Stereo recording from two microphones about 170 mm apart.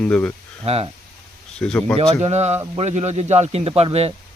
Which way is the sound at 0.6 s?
35° right (ahead or behind).